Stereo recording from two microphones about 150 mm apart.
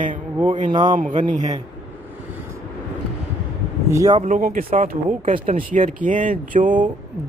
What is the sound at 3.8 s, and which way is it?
Speech, 20° right (ahead or behind).